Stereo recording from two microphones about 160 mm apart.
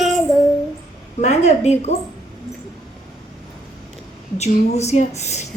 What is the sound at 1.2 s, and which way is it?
Speech, 45° left (ahead or behind).